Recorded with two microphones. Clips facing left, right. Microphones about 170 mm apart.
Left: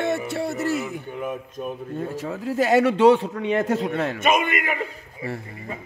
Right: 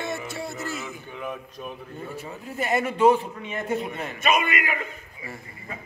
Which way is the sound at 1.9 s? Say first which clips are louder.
Left 7 dB; 90° left.